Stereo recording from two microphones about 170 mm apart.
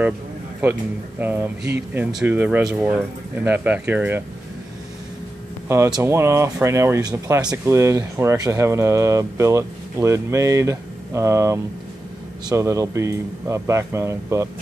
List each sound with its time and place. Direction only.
1.2 s speech: 10° right (ahead or behind)
5.9 s speech: 15° right (ahead or behind)